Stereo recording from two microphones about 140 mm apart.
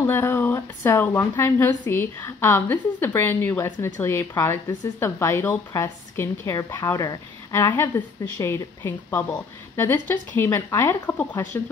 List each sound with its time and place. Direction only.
0.0 s speech: 20° left (ahead or behind)